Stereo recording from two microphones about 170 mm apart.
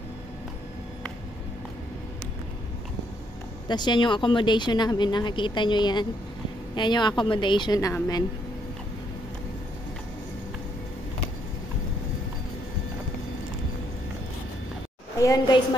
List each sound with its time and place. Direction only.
3.6 s speech: 25° left (ahead or behind)
15.1 s a woman's voice: 20° left (ahead or behind)